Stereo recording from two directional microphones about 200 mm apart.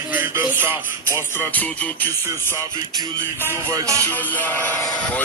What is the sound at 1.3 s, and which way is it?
Speech, 10° left (ahead or behind).